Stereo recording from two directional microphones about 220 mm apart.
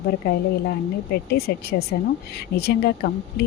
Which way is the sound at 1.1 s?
45° left (ahead or behind).